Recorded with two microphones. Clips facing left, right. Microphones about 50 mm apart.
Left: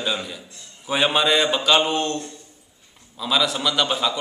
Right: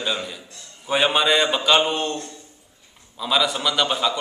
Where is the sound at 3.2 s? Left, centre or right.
Centre.